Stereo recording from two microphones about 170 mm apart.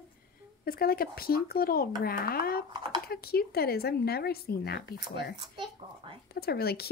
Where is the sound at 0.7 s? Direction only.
60° left (ahead or behind).